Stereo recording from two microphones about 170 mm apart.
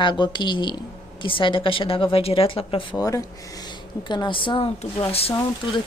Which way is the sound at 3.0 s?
20° left (ahead or behind).